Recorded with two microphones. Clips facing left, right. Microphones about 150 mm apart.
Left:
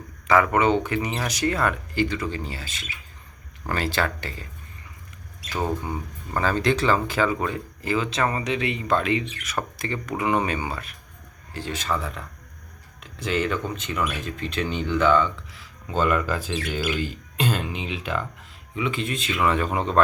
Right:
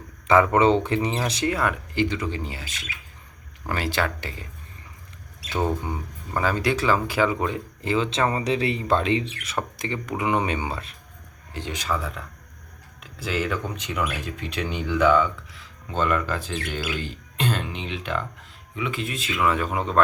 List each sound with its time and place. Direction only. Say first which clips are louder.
0.3 s speech: right 2 dB; 25° right (ahead or behind)
1.5 s speech: left 3 dB; 10° right (ahead or behind)
5.6 s speech: left 2 dB; 20° right (ahead or behind)
15.5 s speech: left 3 dB; 5° left (ahead or behind)